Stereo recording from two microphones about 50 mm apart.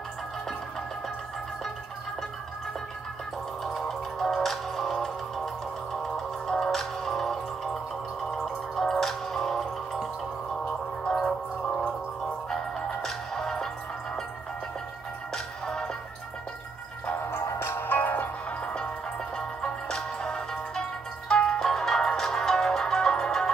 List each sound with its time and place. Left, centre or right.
3.6 s music: centre
11.1 s music: centre
15.3 s music: centre
17.6 s music: left
18.6 s music: left